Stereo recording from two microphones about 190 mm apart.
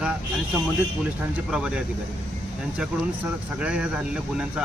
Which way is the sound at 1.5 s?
5° right (ahead or behind).